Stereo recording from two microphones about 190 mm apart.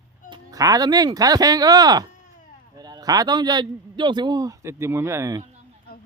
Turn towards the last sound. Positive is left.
turn(degrees=-15)  # may be behind; listen again after turning